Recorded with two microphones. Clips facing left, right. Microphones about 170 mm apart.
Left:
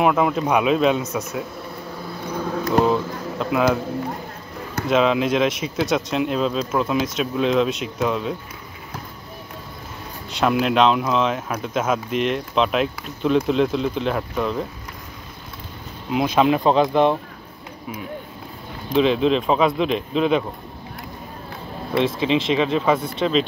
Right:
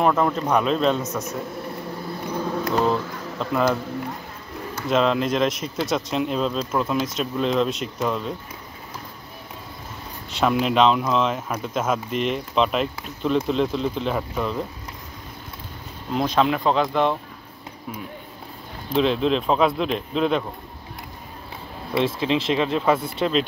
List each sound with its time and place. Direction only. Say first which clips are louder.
0.0 s a man's voice: left 2 dB; 5° left (ahead or behind)
2.6 s speech: left 4 dB; 5° left (ahead or behind)
4.8 s speech: left 2 dB; 5° left (ahead or behind)
10.4 s speech: left 1 dB; centre (ahead or behind)
16.1 s a man's voice: left 3 dB; 10° left (ahead or behind)
18.9 s speech: left 3 dB; centre (ahead or behind)
21.9 s speech: left 2 dB; centre (ahead or behind)